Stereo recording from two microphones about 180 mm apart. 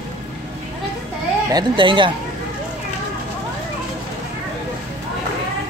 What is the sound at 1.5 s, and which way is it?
Speech, 25° right (ahead or behind).